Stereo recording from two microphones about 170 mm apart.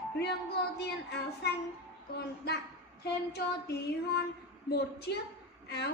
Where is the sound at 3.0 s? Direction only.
70° left (ahead or behind).